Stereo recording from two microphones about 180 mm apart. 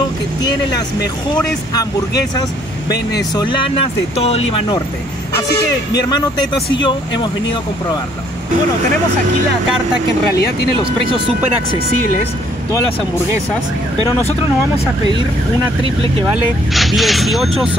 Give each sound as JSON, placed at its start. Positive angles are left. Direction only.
{"t": 0.4, "sound": "speech", "side_deg": 20}
{"t": 3.2, "sound": "speech", "side_deg": 25}
{"t": 5.9, "sound": "speech", "side_deg": 20}
{"t": 10.3, "sound": "speech", "side_deg": 65}
{"t": 15.8, "sound": "speech", "side_deg": -30}
{"t": 16.3, "sound": "speech", "side_deg": 0}